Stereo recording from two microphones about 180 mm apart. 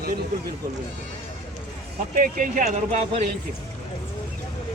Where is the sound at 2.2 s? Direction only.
50° right (ahead or behind).